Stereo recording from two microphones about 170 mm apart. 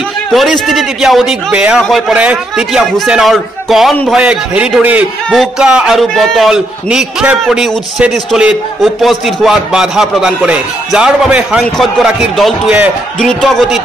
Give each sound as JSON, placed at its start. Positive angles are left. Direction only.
{"t": 0.3, "sound": "a man's voice", "side_deg": 0}